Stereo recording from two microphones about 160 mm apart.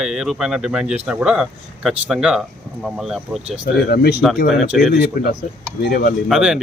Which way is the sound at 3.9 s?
80° left.